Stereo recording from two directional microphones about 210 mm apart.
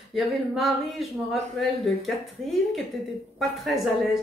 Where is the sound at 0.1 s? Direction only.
Centre (ahead or behind).